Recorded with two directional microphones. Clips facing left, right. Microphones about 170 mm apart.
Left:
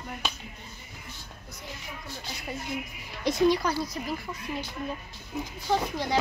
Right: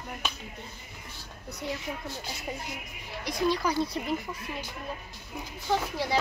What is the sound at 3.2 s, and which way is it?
Speech, 25° left (ahead or behind).